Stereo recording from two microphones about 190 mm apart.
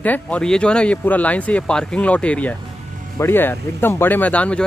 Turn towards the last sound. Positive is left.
turn(degrees=5)  # may be behind; listen again after turning